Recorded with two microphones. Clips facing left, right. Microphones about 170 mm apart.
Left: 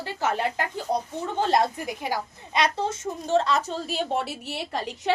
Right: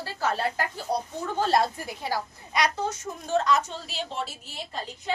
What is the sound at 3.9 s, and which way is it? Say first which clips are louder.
A woman's voice: left 6 dB; 55° left (ahead or behind).